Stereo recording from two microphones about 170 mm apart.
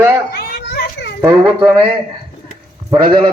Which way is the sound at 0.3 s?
70° left (ahead or behind).